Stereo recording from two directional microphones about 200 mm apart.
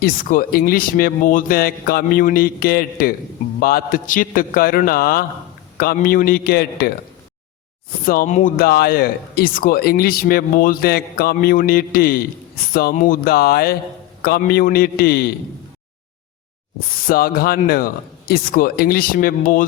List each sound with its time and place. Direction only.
0.0 s speech: 45° left (ahead or behind)
8.0 s speech: 45° left (ahead or behind)
17.1 s speech: 45° left (ahead or behind)